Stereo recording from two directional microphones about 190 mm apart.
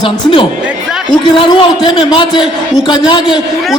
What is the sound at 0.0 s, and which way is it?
A man's voice, 25° left (ahead or behind).